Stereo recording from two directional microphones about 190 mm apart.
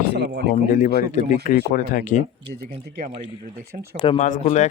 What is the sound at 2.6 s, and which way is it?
Speech, 55° right (ahead or behind).